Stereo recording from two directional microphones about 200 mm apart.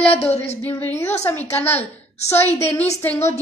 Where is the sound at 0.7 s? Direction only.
10° left (ahead or behind).